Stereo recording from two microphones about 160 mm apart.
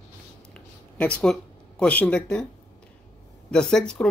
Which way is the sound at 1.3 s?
5° left (ahead or behind).